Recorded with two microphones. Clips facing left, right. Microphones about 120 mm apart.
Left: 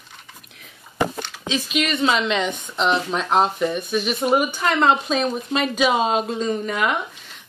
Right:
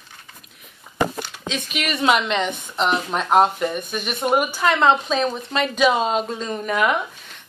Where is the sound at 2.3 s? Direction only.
5° right (ahead or behind).